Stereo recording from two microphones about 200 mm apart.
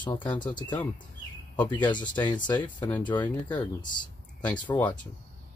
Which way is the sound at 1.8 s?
20° left (ahead or behind).